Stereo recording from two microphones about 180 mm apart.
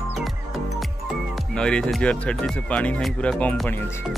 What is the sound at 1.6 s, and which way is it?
Speech, 5° left (ahead or behind).